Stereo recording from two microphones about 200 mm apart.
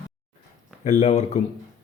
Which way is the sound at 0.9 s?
35° left (ahead or behind).